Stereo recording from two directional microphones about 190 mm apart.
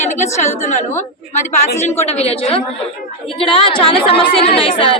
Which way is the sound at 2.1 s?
35° left (ahead or behind).